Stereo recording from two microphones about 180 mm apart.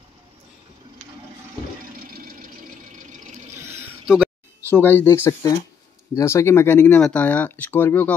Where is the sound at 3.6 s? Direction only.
15° right (ahead or behind).